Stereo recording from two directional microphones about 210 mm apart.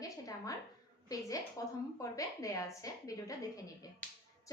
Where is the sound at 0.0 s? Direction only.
15° left (ahead or behind).